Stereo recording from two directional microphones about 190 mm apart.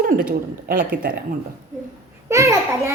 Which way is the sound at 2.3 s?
15° right (ahead or behind).